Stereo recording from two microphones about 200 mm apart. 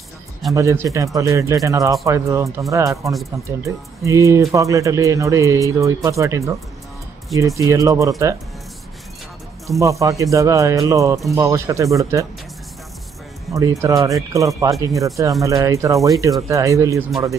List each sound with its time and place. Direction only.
0.6 s speech: 15° right (ahead or behind)
9.8 s speech: 15° right (ahead or behind)
13.5 s speech: 15° right (ahead or behind)